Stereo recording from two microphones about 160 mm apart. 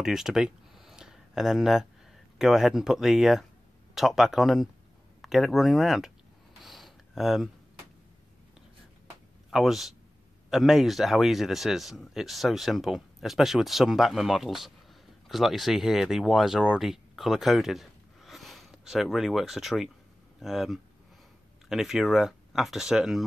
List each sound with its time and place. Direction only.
0.0 s speech: 5° right (ahead or behind)
6.6 s a sound: centre (ahead or behind)
9.5 s speech: centre (ahead or behind)